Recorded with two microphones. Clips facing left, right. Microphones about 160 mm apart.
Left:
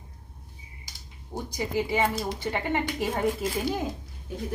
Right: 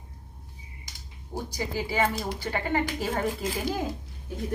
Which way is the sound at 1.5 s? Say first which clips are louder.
Left 2 dB; 20° left (ahead or behind).